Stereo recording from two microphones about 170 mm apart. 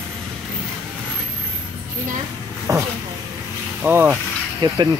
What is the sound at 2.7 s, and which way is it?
Speech, 20° right (ahead or behind).